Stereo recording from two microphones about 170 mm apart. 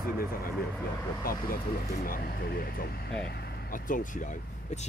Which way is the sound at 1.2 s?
55° left (ahead or behind).